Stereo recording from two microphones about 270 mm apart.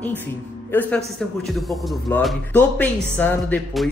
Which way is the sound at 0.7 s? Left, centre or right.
Centre.